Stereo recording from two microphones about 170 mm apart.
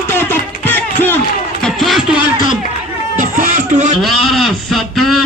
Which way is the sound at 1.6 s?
Centre (ahead or behind).